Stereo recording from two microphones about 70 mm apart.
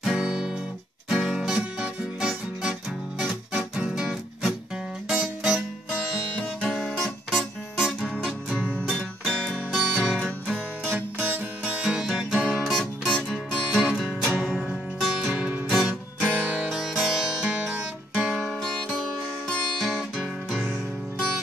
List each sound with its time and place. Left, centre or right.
0.0 s guitar: centre
1.0 s music: centre
5.9 s music: left
6.6 s music: centre
8.5 s music: centre
8.9 s music: centre
10.9 s music: right; by 12.4 s centre
12.5 s music: centre
16.2 s music: centre
16.7 s music: centre
18.3 s music: centre